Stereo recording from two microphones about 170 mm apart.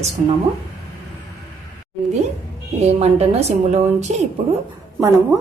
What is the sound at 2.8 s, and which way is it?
A woman's voice, 40° right (ahead or behind).